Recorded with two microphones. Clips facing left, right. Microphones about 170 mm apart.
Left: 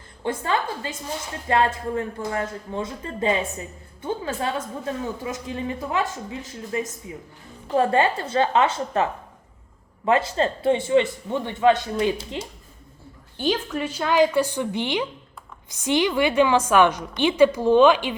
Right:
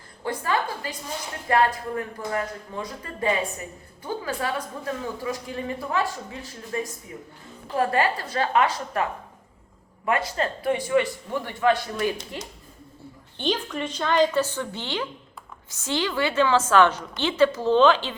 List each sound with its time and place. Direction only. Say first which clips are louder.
0.2 s a man's voice: left 1 dB; 25° left (ahead or behind)
10.1 s a man's voice: left 4 dB; 25° left (ahead or behind)
13.4 s a woman's voice: left 3 dB; 5° left (ahead or behind)